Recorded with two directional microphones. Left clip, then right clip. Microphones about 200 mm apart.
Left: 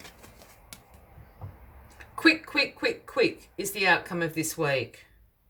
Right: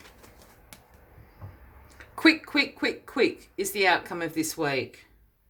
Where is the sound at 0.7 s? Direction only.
5° right (ahead or behind).